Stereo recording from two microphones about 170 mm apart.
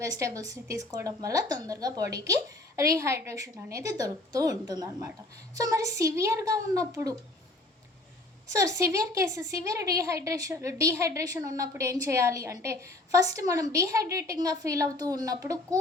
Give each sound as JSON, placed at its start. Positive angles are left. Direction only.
{"t": 0.0, "sound": "a woman's voice", "side_deg": -20}
{"t": 8.5, "sound": "a woman's voice", "side_deg": -20}